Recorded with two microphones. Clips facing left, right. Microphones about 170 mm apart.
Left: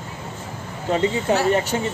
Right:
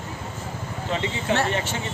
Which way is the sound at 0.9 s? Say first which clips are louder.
Left 6 dB; 40° left (ahead or behind).